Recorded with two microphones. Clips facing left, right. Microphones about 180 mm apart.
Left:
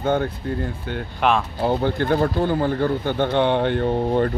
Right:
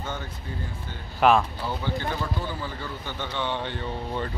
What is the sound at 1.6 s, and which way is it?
Speech, 55° left (ahead or behind).